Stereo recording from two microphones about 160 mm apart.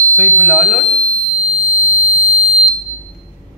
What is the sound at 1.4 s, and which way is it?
Fire alarm, 40° right (ahead or behind).